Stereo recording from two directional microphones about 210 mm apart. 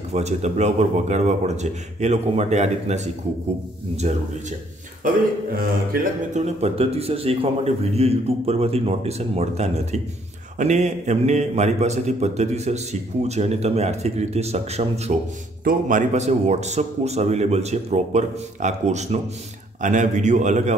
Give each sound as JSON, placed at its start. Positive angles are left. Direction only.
{"t": 0.1, "sound": "a man's voice", "side_deg": -30}
{"t": 6.3, "sound": "a man's voice", "side_deg": -30}